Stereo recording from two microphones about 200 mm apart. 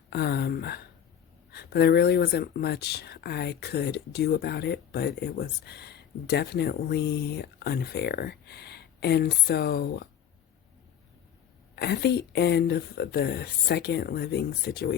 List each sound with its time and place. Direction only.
0.1 s speech: 55° left (ahead or behind)
11.7 s speech: 55° left (ahead or behind)